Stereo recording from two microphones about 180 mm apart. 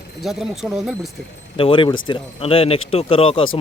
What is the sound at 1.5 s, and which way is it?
Speech, 30° left (ahead or behind).